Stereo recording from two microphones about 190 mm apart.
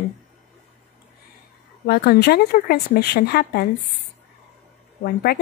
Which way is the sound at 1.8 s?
55° left (ahead or behind).